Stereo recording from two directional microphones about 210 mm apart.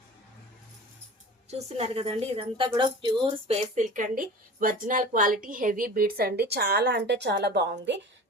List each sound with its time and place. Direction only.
1.5 s speech: 30° right (ahead or behind); by 7.9 s 55° right (ahead or behind)